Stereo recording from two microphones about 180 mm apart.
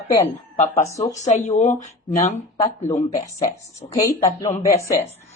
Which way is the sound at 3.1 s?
45° left (ahead or behind).